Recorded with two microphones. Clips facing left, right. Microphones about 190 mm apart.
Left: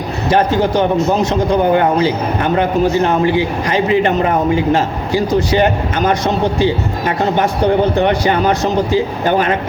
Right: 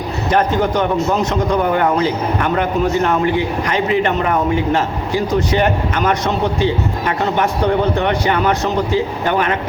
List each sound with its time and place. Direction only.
0.3 s a man's voice: 30° left (ahead or behind)